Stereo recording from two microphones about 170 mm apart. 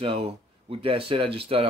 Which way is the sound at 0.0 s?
30° right (ahead or behind).